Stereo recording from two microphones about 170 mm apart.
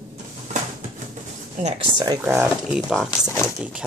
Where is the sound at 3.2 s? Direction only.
15° left (ahead or behind).